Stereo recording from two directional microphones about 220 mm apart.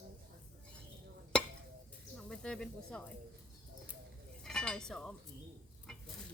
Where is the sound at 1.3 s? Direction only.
5° left (ahead or behind).